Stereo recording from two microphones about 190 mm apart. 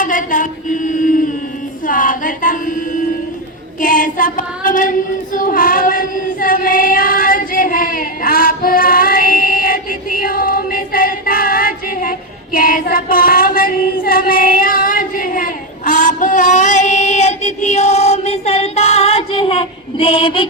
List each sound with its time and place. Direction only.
0.0 s a sound: 45° left (ahead or behind)
1.9 s female singing: 45° left (ahead or behind)
3.8 s child singing: 45° left (ahead or behind); by 20.5 s 30° left (ahead or behind)